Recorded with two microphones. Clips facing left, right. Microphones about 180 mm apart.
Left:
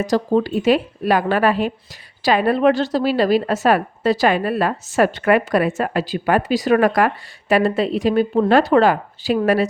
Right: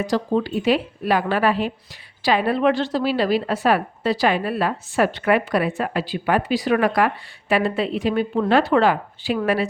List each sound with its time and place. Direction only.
0.0 s a woman's voice: 40° left (ahead or behind)